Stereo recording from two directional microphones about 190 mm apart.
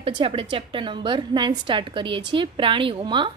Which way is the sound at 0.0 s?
30° right (ahead or behind).